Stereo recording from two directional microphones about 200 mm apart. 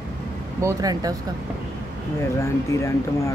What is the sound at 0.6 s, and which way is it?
Speech, 20° right (ahead or behind).